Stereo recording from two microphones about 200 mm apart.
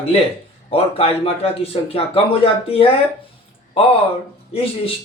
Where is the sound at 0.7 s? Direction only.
30° left (ahead or behind).